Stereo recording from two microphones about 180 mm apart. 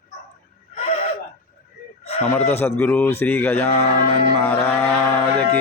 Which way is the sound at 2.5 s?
10° left (ahead or behind).